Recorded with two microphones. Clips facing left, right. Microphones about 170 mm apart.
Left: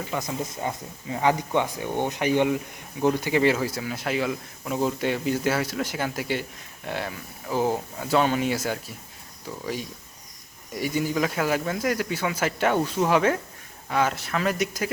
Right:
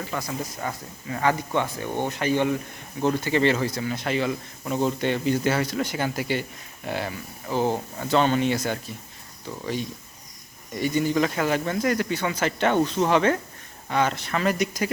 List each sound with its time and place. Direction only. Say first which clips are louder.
0.1 s speech: left 1 dB; 15° left (ahead or behind)